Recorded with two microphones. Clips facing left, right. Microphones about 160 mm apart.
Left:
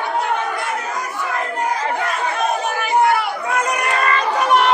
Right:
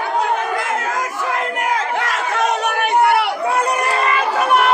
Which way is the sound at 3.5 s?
30° right (ahead or behind).